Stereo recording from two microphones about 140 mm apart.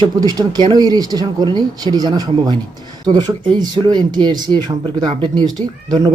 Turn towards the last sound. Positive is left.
turn(degrees=-30)  # may be behind; listen again after turning